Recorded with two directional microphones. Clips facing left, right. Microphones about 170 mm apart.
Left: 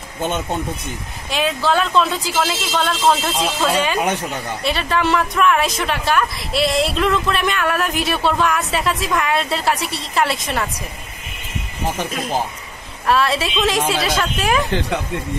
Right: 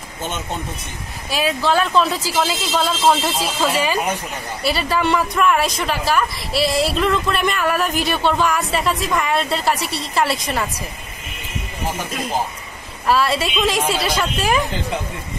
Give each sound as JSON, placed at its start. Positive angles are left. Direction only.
{"t": 1.3, "sound": "a woman's voice", "side_deg": -5}
{"t": 13.0, "sound": "a woman's voice", "side_deg": 0}